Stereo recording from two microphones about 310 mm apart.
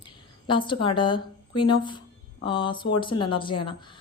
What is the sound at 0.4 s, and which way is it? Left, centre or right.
A woman's voice, centre.